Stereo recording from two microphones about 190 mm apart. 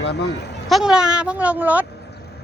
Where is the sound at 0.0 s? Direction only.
65° left (ahead or behind).